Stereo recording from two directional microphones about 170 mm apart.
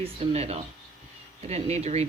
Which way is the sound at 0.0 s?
40° right (ahead or behind).